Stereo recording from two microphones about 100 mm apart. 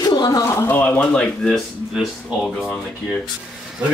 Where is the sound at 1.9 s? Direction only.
10° right (ahead or behind).